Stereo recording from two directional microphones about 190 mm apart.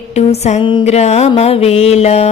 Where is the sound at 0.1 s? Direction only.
35° left (ahead or behind).